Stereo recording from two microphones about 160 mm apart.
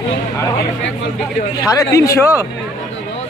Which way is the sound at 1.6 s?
20° left (ahead or behind).